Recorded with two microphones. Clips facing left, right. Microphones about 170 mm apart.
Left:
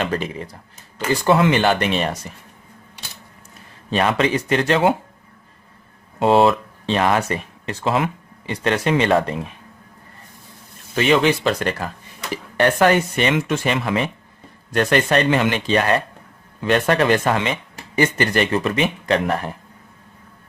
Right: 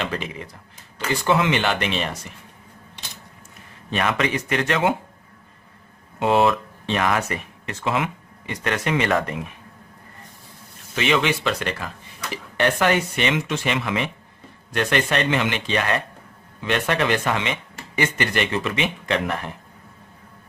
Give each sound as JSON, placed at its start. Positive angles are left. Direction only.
{"t": 0.0, "sound": "speech", "side_deg": 40}
{"t": 3.8, "sound": "speech", "side_deg": 30}
{"t": 6.1, "sound": "speech", "side_deg": 35}
{"t": 10.9, "sound": "speech", "side_deg": 40}